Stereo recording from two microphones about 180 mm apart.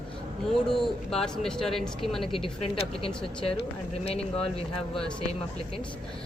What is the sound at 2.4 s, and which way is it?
Speech, 30° left (ahead or behind).